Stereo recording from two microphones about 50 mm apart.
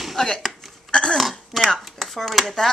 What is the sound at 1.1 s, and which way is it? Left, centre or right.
Throat clearing, centre.